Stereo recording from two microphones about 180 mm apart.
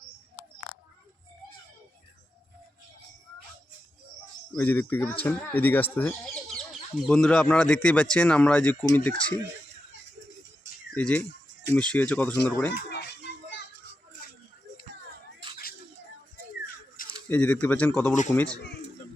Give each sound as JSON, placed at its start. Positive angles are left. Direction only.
{"t": 4.5, "sound": "speech", "side_deg": 10}
{"t": 10.9, "sound": "speech", "side_deg": 10}
{"t": 12.9, "sound": "music", "side_deg": 65}
{"t": 17.2, "sound": "speech", "side_deg": 10}